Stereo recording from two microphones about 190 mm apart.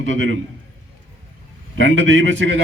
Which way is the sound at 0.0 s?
85° right.